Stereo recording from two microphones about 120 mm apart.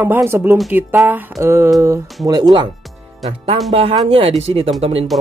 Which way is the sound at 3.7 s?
60° right (ahead or behind).